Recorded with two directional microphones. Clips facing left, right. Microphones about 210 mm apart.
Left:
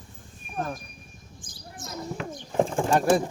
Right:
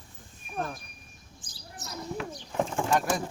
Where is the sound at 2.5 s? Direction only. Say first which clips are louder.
Left 4 dB; 30° left (ahead or behind).